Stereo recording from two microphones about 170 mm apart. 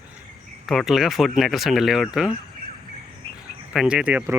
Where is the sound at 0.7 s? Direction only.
Centre (ahead or behind).